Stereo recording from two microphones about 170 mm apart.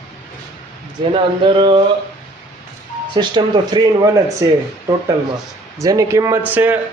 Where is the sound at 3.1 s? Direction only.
25° right (ahead or behind).